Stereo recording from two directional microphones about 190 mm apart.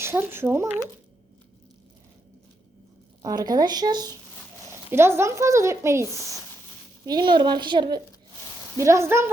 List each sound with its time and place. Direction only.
0.0 s speech: 10° right (ahead or behind)
3.2 s a woman's voice: 20° right (ahead or behind)
6.1 s speech: 15° left (ahead or behind)
7.0 s a woman's voice: 25° right (ahead or behind)